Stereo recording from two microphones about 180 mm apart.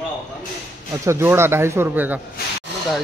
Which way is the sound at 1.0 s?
15° right (ahead or behind).